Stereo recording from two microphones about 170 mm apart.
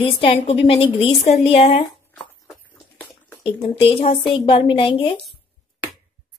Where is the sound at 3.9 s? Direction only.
30° left (ahead or behind).